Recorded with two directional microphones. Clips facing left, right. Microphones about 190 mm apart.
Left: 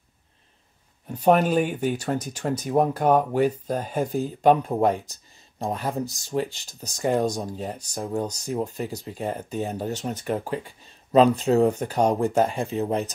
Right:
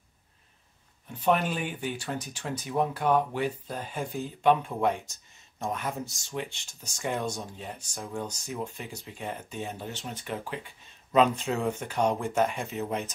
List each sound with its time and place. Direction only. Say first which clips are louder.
1.0 s speech: left 7 dB; 45° left (ahead or behind)